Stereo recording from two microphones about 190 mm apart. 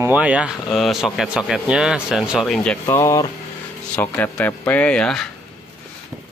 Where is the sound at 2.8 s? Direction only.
15° left (ahead or behind).